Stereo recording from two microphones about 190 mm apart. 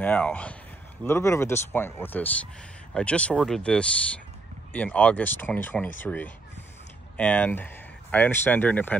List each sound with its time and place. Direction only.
0.0 s speech: 10° left (ahead or behind)